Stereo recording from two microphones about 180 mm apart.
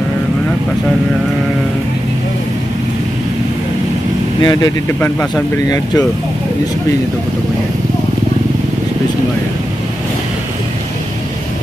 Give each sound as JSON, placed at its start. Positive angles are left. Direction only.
{"t": 4.4, "sound": "speech", "side_deg": 20}